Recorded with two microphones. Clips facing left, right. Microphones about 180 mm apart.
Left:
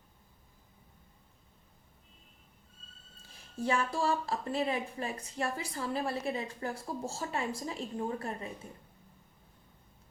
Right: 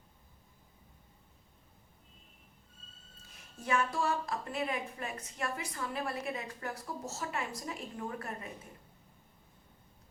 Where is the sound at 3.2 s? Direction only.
30° left (ahead or behind).